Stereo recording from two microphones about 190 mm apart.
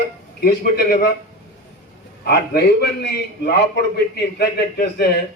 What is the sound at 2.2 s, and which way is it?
A man's voice, 55° left (ahead or behind).